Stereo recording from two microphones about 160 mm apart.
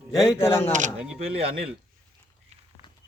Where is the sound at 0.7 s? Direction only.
50° right (ahead or behind).